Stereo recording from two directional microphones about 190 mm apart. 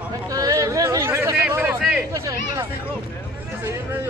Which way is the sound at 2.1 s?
15° right (ahead or behind).